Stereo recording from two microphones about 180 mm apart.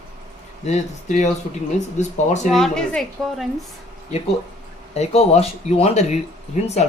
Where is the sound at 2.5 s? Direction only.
5° left (ahead or behind).